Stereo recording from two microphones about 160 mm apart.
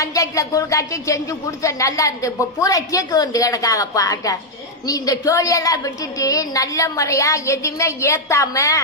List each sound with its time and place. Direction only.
0.0 s speech: 20° left (ahead or behind)